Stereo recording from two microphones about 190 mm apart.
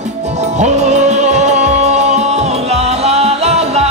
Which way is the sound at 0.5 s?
35° right (ahead or behind).